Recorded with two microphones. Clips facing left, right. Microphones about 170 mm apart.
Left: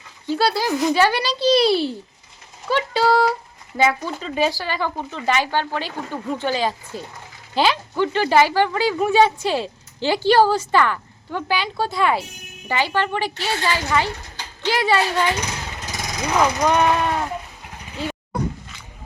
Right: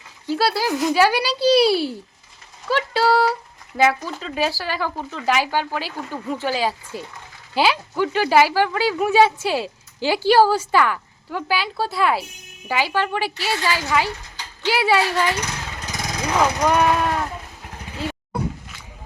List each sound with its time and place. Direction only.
0.3 s speech: 5° right (ahead or behind)
16.6 s speech: 5° right (ahead or behind)
17.9 s vehicle: centre (ahead or behind)